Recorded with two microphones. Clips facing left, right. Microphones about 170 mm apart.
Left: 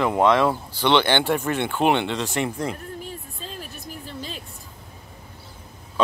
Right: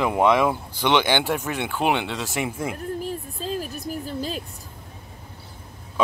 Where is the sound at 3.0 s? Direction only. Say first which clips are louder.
Right 7 dB; 40° right (ahead or behind).